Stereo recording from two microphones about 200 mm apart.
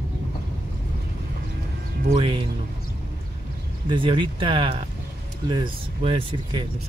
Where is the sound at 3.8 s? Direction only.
25° right (ahead or behind).